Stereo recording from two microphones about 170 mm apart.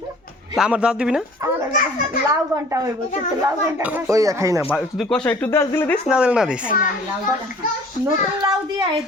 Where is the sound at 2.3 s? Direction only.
20° right (ahead or behind).